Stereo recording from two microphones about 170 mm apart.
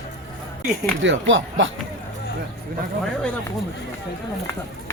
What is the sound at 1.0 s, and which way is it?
Speech, 90° right.